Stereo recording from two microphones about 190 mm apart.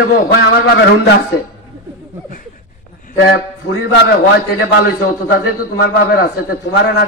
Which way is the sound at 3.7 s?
60° left (ahead or behind).